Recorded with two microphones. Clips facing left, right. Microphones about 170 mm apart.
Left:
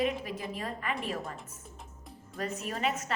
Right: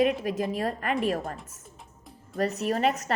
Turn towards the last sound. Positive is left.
turn(degrees=-40)  # may be behind; listen again after turning